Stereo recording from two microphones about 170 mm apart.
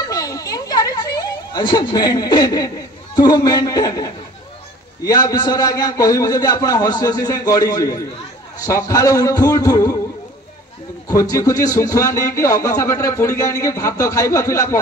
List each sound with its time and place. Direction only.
0.1 s a sound: 20° left (ahead or behind)
3.2 s speech: 25° left (ahead or behind)
11.1 s speech: 20° left (ahead or behind)